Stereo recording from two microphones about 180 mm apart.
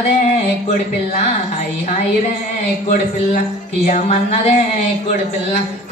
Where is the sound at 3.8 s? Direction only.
35° left (ahead or behind).